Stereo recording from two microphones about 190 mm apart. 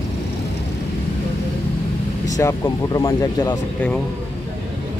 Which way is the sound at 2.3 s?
15° left (ahead or behind).